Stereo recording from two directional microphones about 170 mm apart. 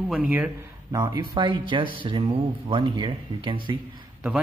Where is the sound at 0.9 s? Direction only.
25° right (ahead or behind).